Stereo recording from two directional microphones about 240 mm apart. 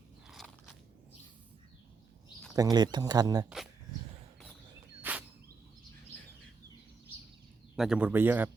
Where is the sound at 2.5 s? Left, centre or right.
Centre.